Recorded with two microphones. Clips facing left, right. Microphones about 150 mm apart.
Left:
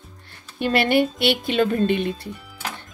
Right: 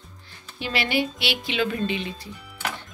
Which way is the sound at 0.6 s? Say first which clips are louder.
Left 7 dB; 55° left (ahead or behind).